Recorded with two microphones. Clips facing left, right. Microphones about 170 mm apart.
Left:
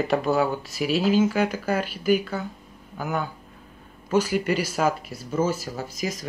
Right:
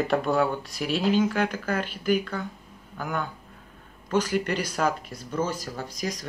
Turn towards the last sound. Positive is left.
turn(degrees=5)  # may be behind; listen again after turning